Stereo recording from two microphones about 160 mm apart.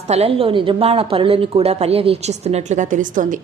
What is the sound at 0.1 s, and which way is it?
A woman's voice, 40° right (ahead or behind).